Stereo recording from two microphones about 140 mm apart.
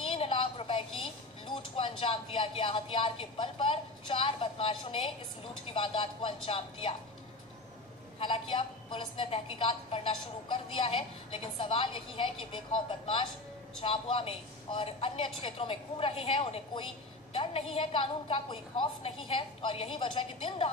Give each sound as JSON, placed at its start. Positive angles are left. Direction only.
{"t": 0.0, "sound": "music", "side_deg": 40}
{"t": 5.7, "sound": "a woman's voice", "side_deg": 40}
{"t": 8.2, "sound": "a woman's voice", "side_deg": 35}